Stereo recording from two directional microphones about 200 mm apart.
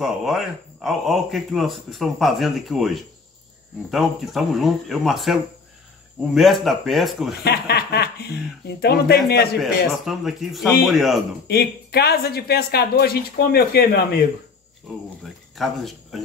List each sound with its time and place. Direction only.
0.0 s speech: centre (ahead or behind)
7.4 s speech: 55° left (ahead or behind)
9.6 s speech: centre (ahead or behind)
11.4 s speech: 55° left (ahead or behind)
15.2 s speech: centre (ahead or behind)